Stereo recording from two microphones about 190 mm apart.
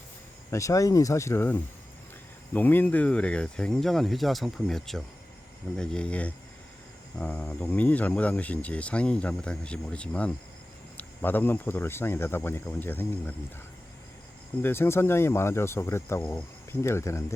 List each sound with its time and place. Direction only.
0.5 s speech: 15° left (ahead or behind)
14.6 s speech: 10° left (ahead or behind)